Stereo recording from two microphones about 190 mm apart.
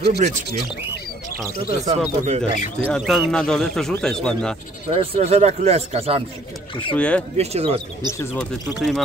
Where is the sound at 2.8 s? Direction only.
Centre (ahead or behind).